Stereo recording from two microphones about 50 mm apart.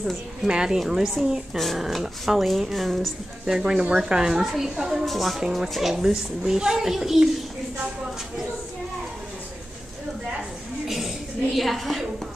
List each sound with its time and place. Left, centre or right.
0.5 s a child's voice: centre
1.6 s speech: centre
3.4 s a child's voice: centre
10.9 s a sound: centre